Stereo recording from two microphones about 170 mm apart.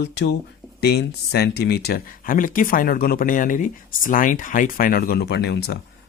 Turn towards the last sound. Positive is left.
turn(degrees=80)